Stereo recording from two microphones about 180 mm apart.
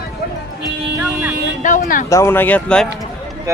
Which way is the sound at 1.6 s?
45° left (ahead or behind).